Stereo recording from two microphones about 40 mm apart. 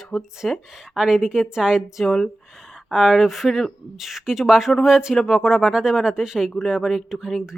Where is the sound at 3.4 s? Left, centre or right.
Centre.